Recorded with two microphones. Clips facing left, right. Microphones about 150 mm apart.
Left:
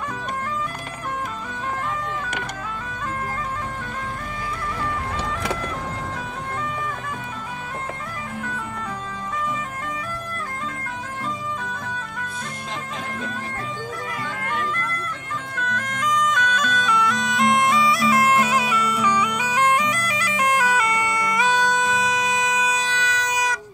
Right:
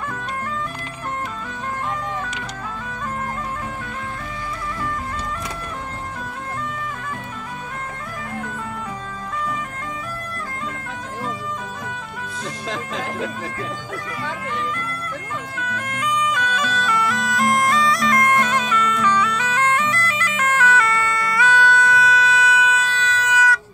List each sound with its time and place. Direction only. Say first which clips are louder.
15.5 s music: left 2 dB; 5° right (ahead or behind); by 23.6 s 15° left (ahead or behind)